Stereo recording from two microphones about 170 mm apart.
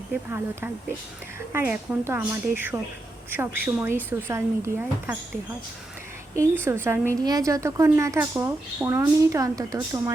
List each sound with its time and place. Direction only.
0.1 s speech: 10° right (ahead or behind)
6.3 s a woman's voice: 15° right (ahead or behind)